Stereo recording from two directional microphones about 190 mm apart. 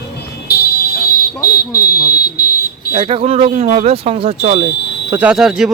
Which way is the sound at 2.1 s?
50° left (ahead or behind).